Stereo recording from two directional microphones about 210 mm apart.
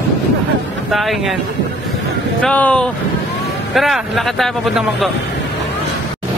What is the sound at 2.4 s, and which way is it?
Speech, 5° left (ahead or behind).